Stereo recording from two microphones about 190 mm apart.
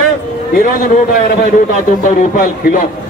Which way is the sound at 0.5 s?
40° left (ahead or behind).